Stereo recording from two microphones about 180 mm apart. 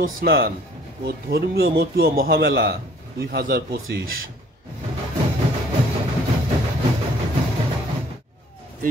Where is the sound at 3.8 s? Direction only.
90° right.